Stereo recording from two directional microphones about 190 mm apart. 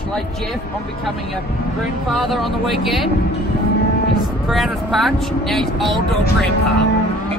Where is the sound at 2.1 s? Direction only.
Centre (ahead or behind).